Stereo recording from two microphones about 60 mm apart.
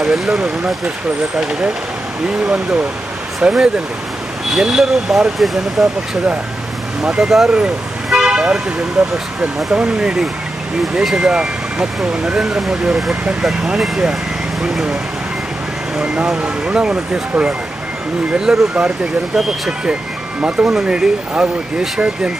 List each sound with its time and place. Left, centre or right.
0.0 s speech: centre
2.2 s speech: centre
7.0 s speech: centre
16.0 s speech: centre